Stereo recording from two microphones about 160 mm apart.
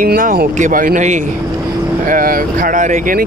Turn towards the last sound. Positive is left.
turn(degrees=-55)  # may be behind; listen again after turning